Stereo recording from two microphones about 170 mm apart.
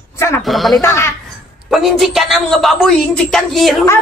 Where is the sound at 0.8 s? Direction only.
15° left (ahead or behind).